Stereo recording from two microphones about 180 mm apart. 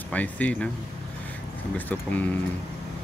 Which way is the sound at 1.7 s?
10° left (ahead or behind).